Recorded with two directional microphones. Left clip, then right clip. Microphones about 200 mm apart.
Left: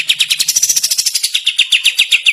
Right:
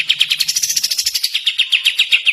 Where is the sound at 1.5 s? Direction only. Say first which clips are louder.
Left 4 dB; 5° right (ahead or behind).